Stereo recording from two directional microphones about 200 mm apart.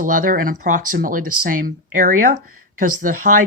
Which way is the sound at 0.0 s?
40° right (ahead or behind).